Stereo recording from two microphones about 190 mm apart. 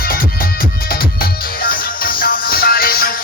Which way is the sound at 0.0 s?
50° left (ahead or behind).